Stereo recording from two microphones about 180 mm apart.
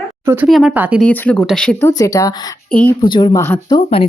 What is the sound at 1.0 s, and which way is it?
Speech, 10° left (ahead or behind).